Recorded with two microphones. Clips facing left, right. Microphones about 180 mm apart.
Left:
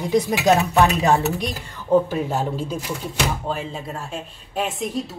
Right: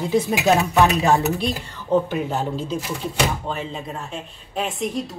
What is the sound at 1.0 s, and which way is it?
A woman's voice, 15° left (ahead or behind).